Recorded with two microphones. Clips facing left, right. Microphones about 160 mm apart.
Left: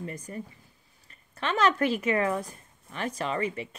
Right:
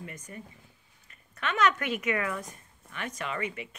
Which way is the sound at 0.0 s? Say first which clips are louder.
Left 6 dB; 35° left (ahead or behind).